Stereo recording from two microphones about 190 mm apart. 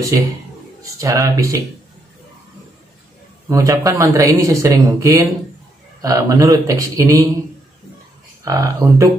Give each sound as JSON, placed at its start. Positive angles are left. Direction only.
{"t": 0.9, "sound": "speech", "side_deg": -15}
{"t": 3.4, "sound": "speech", "side_deg": -15}
{"t": 8.5, "sound": "speech", "side_deg": -20}